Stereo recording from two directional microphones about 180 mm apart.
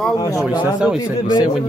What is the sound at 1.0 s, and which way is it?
Speech, 20° left (ahead or behind).